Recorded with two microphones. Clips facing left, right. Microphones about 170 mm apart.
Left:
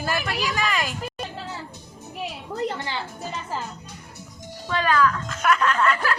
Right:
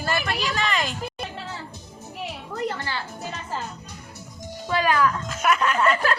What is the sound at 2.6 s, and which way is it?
Music, 20° left (ahead or behind).